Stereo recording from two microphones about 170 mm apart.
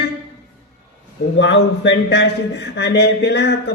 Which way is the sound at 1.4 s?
90° left.